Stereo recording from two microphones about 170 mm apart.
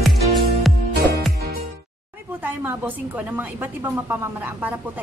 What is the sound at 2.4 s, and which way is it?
Speech, 10° right (ahead or behind).